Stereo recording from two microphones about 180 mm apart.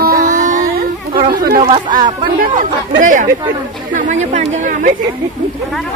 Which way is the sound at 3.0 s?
45° right (ahead or behind).